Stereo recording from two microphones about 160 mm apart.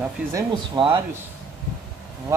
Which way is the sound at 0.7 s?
30° right (ahead or behind).